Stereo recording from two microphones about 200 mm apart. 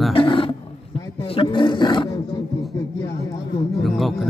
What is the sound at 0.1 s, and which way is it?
Roaring cats, 25° left (ahead or behind).